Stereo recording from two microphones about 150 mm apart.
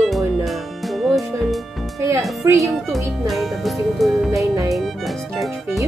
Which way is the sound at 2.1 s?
20° right (ahead or behind).